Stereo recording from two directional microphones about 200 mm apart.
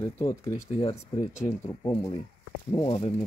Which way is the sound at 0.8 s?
30° left (ahead or behind).